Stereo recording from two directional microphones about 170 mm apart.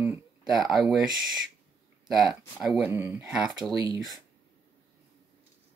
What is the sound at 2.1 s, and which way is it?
Speech, centre (ahead or behind).